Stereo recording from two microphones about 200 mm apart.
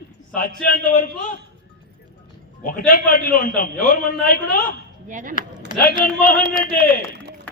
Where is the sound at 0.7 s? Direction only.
40° left (ahead or behind).